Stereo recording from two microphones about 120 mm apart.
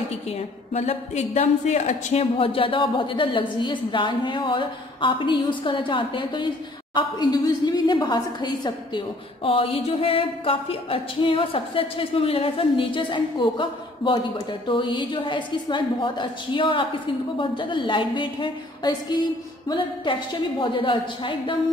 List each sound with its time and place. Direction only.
0.7 s a woman's voice: 65° left (ahead or behind); by 2.2 s 80° left
2.3 s a woman's voice: 50° left (ahead or behind)